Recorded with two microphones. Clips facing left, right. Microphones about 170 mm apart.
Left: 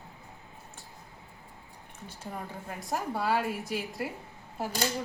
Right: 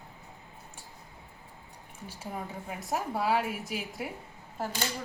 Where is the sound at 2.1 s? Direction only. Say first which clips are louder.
Right 1 dB; 5° right (ahead or behind).